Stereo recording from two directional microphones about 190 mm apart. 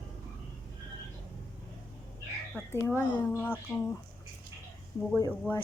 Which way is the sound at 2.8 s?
15° left (ahead or behind).